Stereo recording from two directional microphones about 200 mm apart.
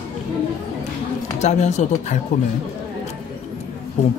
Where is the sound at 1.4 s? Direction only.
35° left (ahead or behind).